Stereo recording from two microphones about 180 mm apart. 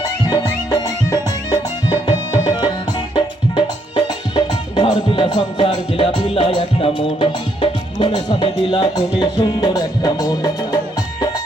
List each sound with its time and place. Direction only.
0.0 s music: 20° left (ahead or behind)
2.4 s tabla: 20° left (ahead or behind)
3.5 s music: 25° left (ahead or behind)